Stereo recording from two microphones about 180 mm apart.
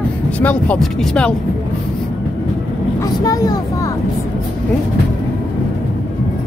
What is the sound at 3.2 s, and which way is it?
Speech, 20° left (ahead or behind).